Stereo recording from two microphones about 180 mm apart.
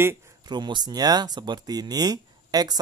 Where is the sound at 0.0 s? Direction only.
15° right (ahead or behind).